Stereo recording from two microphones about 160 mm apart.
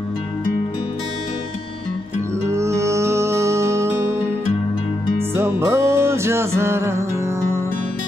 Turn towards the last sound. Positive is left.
turn(degrees=-15)  # may be behind; listen again after turning